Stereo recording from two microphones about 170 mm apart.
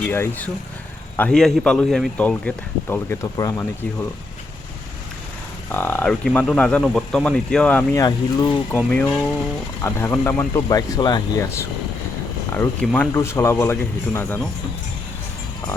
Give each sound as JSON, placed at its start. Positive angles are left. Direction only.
{"t": 0.1, "sound": "a man's voice", "side_deg": 10}
{"t": 5.7, "sound": "speech", "side_deg": 10}
{"t": 8.0, "sound": "speech", "side_deg": 25}
{"t": 8.9, "sound": "a man's voice", "side_deg": 10}
{"t": 12.5, "sound": "a man's voice", "side_deg": 5}